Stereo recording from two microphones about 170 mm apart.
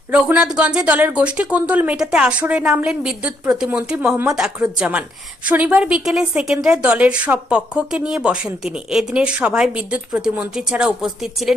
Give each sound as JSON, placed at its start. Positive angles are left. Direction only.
{"t": 0.1, "sound": "a woman's voice", "side_deg": -5}